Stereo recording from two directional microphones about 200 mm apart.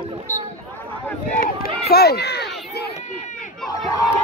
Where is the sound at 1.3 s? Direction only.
45° left (ahead or behind).